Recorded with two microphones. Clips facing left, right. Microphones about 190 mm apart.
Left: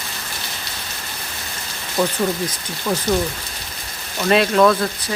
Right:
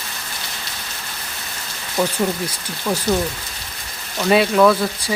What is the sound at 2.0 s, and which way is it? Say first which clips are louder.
Frying: even; 15° right (ahead or behind).